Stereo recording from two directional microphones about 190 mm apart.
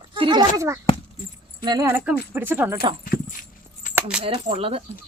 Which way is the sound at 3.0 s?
50° left (ahead or behind).